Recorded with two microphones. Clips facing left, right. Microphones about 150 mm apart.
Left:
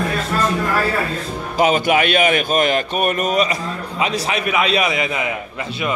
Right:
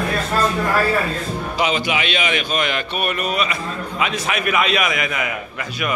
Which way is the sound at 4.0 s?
30° left (ahead or behind).